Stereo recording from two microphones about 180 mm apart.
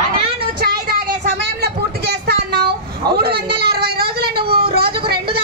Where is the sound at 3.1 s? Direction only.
60° right (ahead or behind).